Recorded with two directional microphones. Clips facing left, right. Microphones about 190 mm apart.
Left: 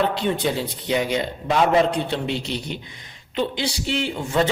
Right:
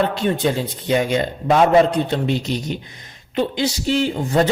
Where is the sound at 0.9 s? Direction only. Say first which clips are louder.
Right 4 dB; 50° right (ahead or behind).